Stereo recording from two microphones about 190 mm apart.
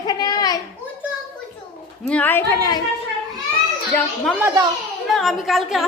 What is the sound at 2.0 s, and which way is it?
Speech, 10° left (ahead or behind).